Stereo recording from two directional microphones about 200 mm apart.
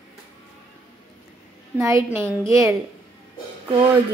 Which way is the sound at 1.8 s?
15° right (ahead or behind).